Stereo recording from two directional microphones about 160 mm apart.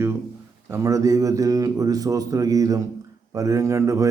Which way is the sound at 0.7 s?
20° right (ahead or behind).